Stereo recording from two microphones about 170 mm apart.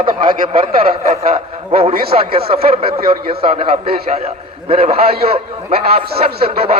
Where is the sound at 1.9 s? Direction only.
60° right (ahead or behind).